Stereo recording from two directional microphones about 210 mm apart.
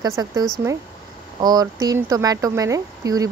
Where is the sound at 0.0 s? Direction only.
15° right (ahead or behind).